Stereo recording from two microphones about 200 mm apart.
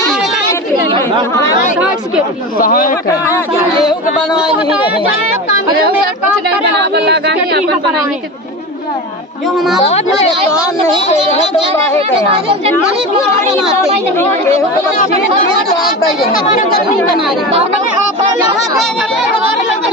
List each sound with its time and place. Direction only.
2.6 s a man's voice: 45° left (ahead or behind)
4.5 s a woman's voice: 5° right (ahead or behind)
6.9 s speech: 55° right (ahead or behind)
9.6 s a woman's voice: centre (ahead or behind)
11.0 s speech: 35° left (ahead or behind)
18.8 s speech: centre (ahead or behind)